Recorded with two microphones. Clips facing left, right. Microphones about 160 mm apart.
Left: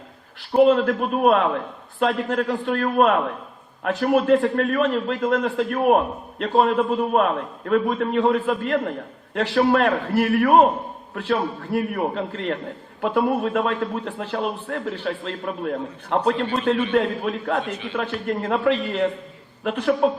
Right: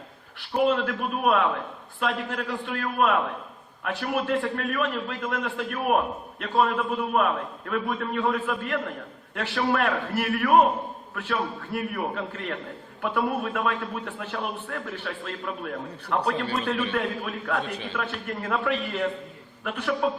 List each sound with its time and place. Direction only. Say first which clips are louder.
0.5 s a man's voice: left 7 dB; 35° left (ahead or behind)
17.7 s a man's voice: left 4 dB; 35° right (ahead or behind)
17.9 s a man's voice: left 9 dB; 35° left (ahead or behind)